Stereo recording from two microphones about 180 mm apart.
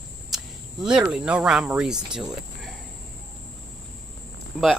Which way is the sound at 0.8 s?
5° right (ahead or behind).